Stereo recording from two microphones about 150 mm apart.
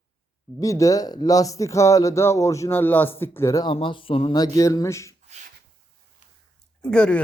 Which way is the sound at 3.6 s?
35° left (ahead or behind).